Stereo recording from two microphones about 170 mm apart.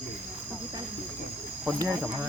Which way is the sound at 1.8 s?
15° right (ahead or behind).